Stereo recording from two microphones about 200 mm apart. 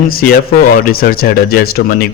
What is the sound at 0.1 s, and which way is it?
Speech, 45° left (ahead or behind).